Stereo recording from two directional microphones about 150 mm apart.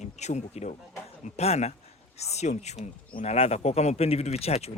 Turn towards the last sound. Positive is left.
turn(degrees=45)  # may be behind; listen again after turning